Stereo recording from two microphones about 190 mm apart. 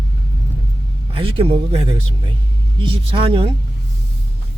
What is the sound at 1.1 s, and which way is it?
Speech, 30° right (ahead or behind).